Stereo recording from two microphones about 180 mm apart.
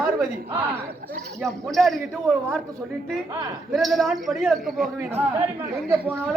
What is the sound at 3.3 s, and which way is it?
Speech, 20° right (ahead or behind).